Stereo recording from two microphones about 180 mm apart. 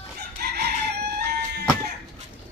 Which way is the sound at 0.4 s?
60° right (ahead or behind).